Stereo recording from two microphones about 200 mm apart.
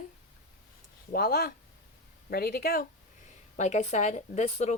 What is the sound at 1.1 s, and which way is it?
Speech, 50° left (ahead or behind).